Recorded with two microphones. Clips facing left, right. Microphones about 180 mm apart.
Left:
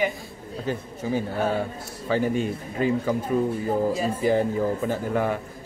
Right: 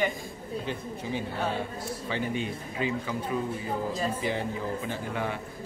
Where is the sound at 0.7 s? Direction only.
40° left (ahead or behind).